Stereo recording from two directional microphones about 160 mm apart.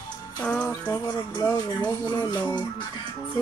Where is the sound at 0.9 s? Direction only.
25° left (ahead or behind).